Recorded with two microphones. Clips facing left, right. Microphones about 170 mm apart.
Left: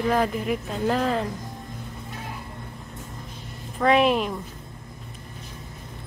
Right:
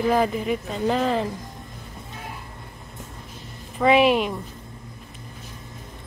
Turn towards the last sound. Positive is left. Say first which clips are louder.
# right 2 dB
turn(degrees=0)  # may be behind; listen again after turning